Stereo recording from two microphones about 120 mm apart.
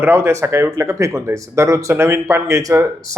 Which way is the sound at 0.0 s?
20° right (ahead or behind).